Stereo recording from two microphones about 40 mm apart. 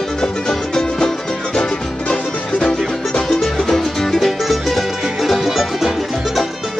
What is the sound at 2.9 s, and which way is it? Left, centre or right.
Music, centre.